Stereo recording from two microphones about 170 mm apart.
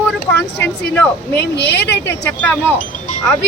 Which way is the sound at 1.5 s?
80° left.